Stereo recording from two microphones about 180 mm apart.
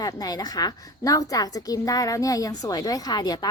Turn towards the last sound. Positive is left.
turn(degrees=20)  # may be behind; listen again after turning